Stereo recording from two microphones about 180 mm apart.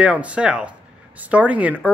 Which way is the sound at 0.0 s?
5° right (ahead or behind).